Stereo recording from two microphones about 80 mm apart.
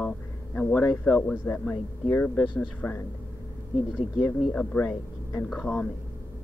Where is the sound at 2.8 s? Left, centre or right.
Left.